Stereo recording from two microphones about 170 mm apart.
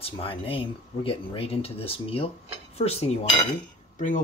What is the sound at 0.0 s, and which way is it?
Speech, 35° left (ahead or behind).